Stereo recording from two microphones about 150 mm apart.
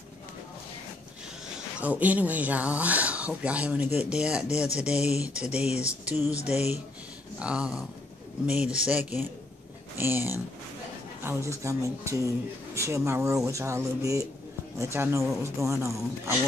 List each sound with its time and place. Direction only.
1.8 s speech: 10° right (ahead or behind)